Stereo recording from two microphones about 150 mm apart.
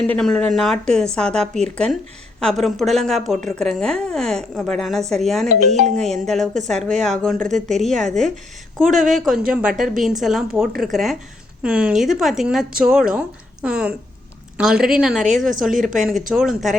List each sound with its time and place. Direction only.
0.1 s speech: 5° left (ahead or behind)
5.6 s speech: 50° right (ahead or behind)
6.2 s speech: 5° left (ahead or behind)